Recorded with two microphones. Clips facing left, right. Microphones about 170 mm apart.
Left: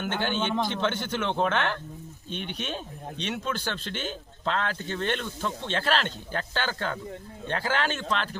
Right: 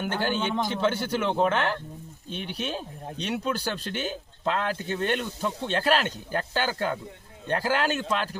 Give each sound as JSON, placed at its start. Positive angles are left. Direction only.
{"t": 0.0, "sound": "speech", "side_deg": -5}